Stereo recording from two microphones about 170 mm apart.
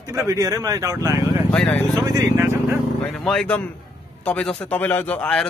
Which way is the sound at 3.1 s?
5° left (ahead or behind).